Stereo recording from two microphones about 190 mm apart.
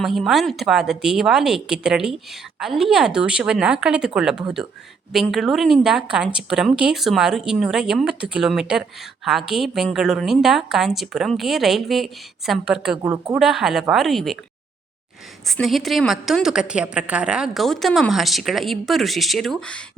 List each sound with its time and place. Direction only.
0.0 s speech: centre (ahead or behind)
13.0 s a woman's voice: 15° right (ahead or behind)
13.4 s speech: 5° right (ahead or behind)
15.4 s speech: centre (ahead or behind)